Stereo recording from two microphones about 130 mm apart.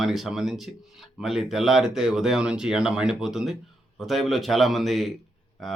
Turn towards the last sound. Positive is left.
turn(degrees=0)  # may be behind; listen again after turning